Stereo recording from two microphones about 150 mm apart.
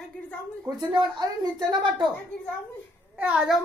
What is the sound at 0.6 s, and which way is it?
A woman's voice, 30° right (ahead or behind).